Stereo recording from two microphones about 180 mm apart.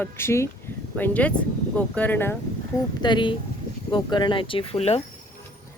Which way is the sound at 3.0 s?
25° left (ahead or behind).